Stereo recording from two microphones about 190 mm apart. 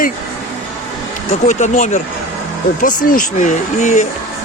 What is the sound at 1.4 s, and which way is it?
Speech, 40° left (ahead or behind).